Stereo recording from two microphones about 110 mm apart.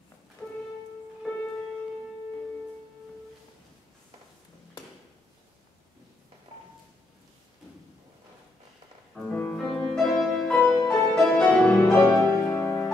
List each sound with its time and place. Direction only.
0.4 s music: 10° left (ahead or behind)
9.1 s music: 15° left (ahead or behind)
10.5 s music: 15° left (ahead or behind)
10.9 s music: 5° left (ahead or behind)
12.4 s music: 15° left (ahead or behind)